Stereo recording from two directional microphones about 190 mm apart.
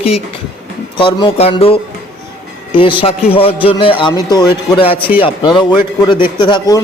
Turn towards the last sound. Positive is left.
turn(degrees=20)  # may be behind; listen again after turning